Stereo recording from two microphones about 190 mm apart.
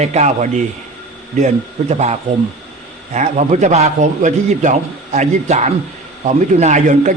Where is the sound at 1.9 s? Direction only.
35° right (ahead or behind).